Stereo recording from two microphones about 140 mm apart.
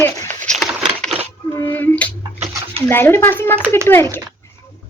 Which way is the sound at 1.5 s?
15° left (ahead or behind).